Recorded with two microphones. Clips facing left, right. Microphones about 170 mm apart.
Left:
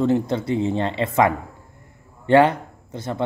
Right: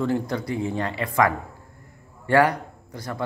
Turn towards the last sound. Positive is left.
turn(degrees=25)  # may be behind; listen again after turning